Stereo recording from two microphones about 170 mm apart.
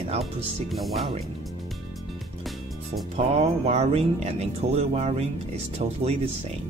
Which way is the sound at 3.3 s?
40° right (ahead or behind).